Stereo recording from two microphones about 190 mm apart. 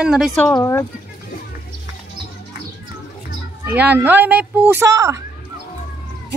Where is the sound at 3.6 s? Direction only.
10° right (ahead or behind).